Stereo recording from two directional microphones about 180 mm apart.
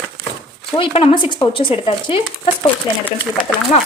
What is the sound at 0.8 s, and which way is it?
Speech, 30° left (ahead or behind).